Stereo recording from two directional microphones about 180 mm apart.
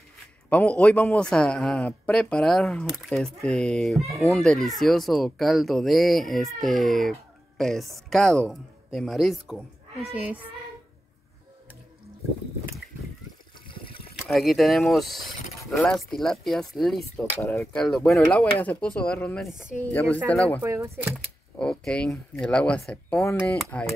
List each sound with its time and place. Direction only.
0.5 s speech: 5° left (ahead or behind)
13.7 s water: 30° left (ahead or behind)
14.3 s speech: centre (ahead or behind)
19.8 s speech: 10° left (ahead or behind)
20.6 s speech: 15° right (ahead or behind)
21.1 s speech: 5° left (ahead or behind)